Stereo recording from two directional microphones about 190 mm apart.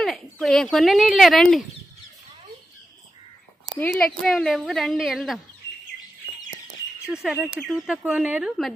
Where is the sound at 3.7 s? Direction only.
10° left (ahead or behind).